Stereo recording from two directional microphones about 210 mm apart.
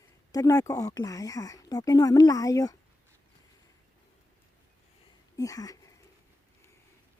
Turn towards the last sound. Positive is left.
turn(degrees=15)  # may be behind; listen again after turning